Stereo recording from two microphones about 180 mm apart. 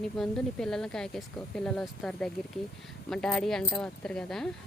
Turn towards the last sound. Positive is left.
turn(degrees=0)  # may be behind; listen again after turning